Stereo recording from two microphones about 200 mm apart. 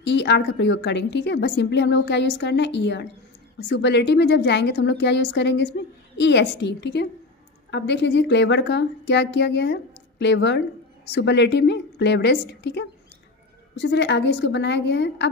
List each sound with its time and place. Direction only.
0.0 s a woman's voice: 60° left (ahead or behind)